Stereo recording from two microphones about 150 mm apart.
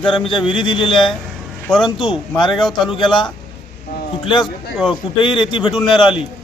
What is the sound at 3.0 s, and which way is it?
Speech, 30° left (ahead or behind).